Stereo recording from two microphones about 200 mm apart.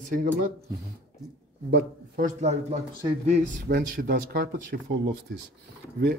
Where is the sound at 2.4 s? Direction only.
35° right (ahead or behind).